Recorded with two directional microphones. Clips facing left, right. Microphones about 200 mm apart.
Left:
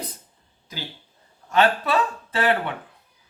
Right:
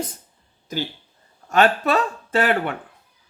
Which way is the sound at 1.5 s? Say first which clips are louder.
Right 2 dB; 45° right (ahead or behind).